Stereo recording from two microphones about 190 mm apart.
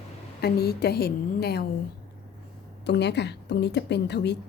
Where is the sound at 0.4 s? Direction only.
55° left (ahead or behind).